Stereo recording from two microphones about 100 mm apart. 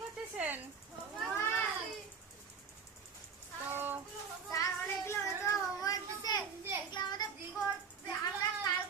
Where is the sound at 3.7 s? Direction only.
20° right (ahead or behind).